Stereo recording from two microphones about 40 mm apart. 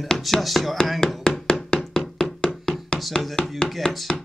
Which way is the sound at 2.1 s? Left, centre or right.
Left.